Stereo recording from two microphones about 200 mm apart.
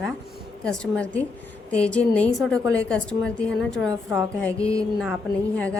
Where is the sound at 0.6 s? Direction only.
5° left (ahead or behind).